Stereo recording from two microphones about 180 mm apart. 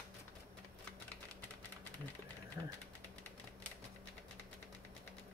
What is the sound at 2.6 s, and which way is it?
Speech, 15° right (ahead or behind).